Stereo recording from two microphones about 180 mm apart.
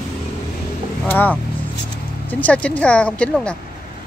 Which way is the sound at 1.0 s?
10° left (ahead or behind).